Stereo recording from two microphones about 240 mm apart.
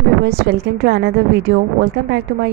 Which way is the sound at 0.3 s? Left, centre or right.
Right.